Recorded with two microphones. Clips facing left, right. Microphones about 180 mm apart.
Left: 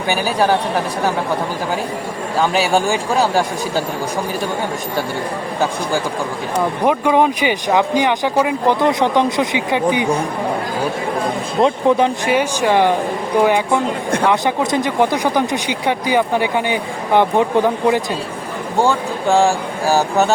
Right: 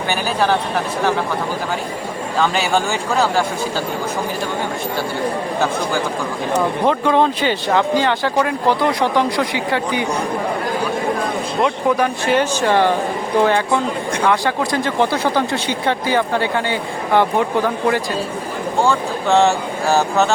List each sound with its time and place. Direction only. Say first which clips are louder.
0.1 s speech: left 3 dB; 10° left (ahead or behind)
2.4 s speech: left 2 dB; 10° left (ahead or behind)
6.8 s speech: left 2 dB; 15° left (ahead or behind)
11.6 s speech: left 4 dB; 25° left (ahead or behind)
12.3 s speech: even; 10° left (ahead or behind)